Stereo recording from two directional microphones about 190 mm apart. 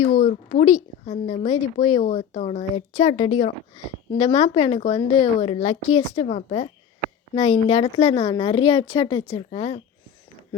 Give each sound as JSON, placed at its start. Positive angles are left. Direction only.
{"t": 0.0, "sound": "a woman's voice", "side_deg": 40}